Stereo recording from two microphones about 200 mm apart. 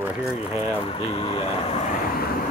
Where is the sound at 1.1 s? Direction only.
30° left (ahead or behind).